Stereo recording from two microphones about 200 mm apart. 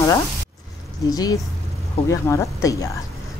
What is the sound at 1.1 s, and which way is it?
Speech, 20° left (ahead or behind).